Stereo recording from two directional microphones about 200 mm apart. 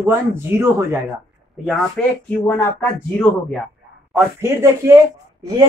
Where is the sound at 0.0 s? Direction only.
10° right (ahead or behind).